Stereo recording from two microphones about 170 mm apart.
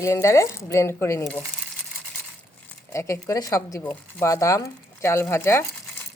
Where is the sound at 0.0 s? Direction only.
20° left (ahead or behind).